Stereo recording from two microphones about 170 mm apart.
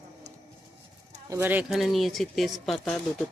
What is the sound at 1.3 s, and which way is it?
Speech, 10° right (ahead or behind).